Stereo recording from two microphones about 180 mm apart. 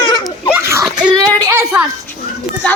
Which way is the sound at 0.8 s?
5° right (ahead or behind).